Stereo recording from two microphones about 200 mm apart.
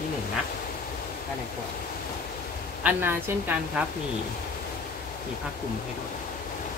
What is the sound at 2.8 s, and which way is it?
Speech, 10° right (ahead or behind).